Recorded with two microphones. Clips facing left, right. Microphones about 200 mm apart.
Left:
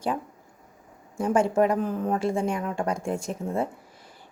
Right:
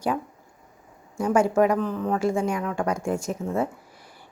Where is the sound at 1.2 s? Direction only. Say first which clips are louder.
Right 2 dB; 30° left (ahead or behind).